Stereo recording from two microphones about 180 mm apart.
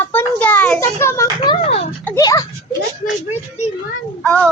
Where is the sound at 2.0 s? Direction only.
15° left (ahead or behind).